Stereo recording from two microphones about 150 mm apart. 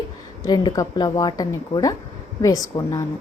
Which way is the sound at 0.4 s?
25° left (ahead or behind).